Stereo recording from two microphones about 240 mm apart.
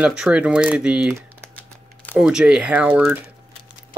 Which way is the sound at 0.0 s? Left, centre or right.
Centre.